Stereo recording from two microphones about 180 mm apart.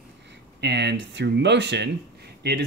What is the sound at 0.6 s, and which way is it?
Speech, 70° right (ahead or behind).